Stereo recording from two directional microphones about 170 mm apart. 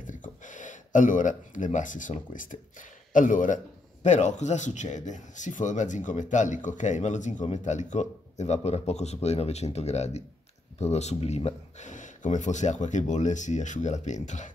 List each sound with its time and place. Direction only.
0.0 s a man's voice: 50° left (ahead or behind)